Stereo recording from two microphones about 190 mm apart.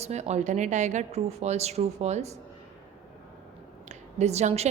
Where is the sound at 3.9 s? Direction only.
35° right (ahead or behind).